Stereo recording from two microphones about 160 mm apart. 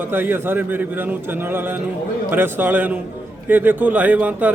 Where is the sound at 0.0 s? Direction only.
15° right (ahead or behind).